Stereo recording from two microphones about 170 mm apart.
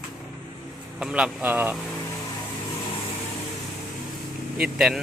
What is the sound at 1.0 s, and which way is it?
Speech, 5° right (ahead or behind).